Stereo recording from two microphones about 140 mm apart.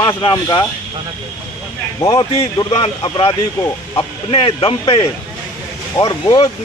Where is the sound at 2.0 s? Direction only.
30° left (ahead or behind).